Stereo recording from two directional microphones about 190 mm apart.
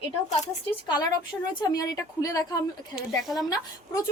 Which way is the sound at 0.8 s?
20° left (ahead or behind).